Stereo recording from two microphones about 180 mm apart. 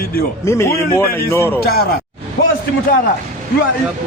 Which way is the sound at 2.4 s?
65° left (ahead or behind).